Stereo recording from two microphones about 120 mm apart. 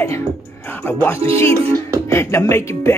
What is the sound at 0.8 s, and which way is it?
Speech, 15° left (ahead or behind).